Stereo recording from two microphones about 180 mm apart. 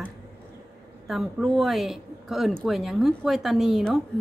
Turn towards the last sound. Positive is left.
turn(degrees=0)  # may be behind; listen again after turning